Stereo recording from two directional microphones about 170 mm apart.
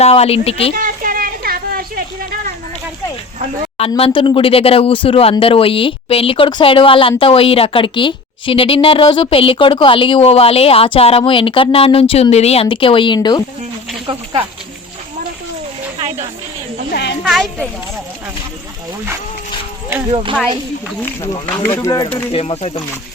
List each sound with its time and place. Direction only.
0.0 s a woman's voice: 35° left (ahead or behind)
0.7 s a sound: 55° right (ahead or behind)
3.8 s a woman's voice: 35° left (ahead or behind)
16.0 s a sound: 40° right (ahead or behind)
16.9 s a woman's voice: 85° left
17.2 s speech: centre (ahead or behind)
20.1 s speech: 35° right (ahead or behind)
21.6 s speech: 15° left (ahead or behind); by 22.8 s 35° left (ahead or behind)